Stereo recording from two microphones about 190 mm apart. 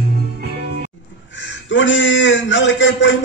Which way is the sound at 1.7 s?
80° left.